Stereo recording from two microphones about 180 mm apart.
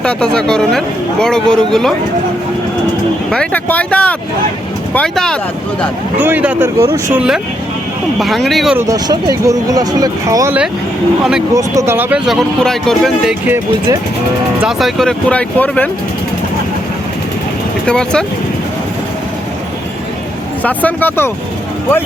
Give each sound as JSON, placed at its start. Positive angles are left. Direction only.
{"t": 0.0, "sound": "speech", "side_deg": 5}
{"t": 3.2, "sound": "speech", "side_deg": 5}
{"t": 6.1, "sound": "speech", "side_deg": -10}
{"t": 8.8, "sound": "speech", "side_deg": -20}
{"t": 14.6, "sound": "speech", "side_deg": 0}
{"t": 17.8, "sound": "speech", "side_deg": 5}
{"t": 20.7, "sound": "speech", "side_deg": 10}